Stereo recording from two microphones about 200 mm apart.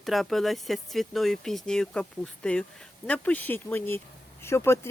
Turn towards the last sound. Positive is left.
turn(degrees=15)  # may be behind; listen again after turning